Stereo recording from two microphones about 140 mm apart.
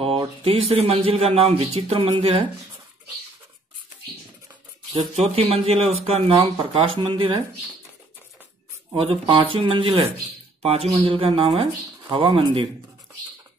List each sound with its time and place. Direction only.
0.0 s speech: 40° right (ahead or behind)
5.1 s speech: 45° right (ahead or behind)
8.9 s speech: 40° right (ahead or behind)